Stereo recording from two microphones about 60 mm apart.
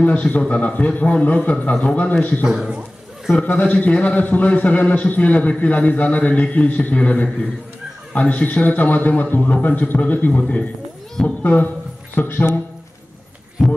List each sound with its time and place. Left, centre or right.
0.0 s a man's voice: left
2.4 s speech: centre
3.4 s a man's voice: left
13.6 s heart sounds: centre